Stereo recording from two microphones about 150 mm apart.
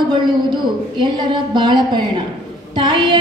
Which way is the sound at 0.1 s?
30° right (ahead or behind).